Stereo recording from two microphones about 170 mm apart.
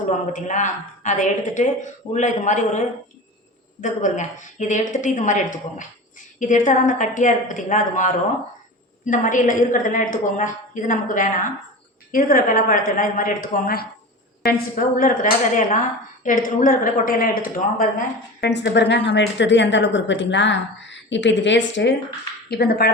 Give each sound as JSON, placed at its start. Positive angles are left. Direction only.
{"t": 0.3, "sound": "a woman's voice", "side_deg": 45}
{"t": 18.3, "sound": "a woman's voice", "side_deg": 85}
{"t": 22.4, "sound": "speech", "side_deg": 70}